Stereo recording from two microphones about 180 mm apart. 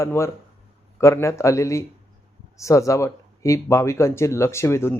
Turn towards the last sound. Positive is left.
turn(degrees=15)  # may be behind; listen again after turning